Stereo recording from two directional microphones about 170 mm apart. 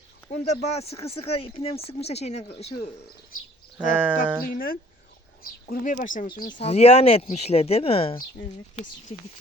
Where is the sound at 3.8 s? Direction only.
10° right (ahead or behind).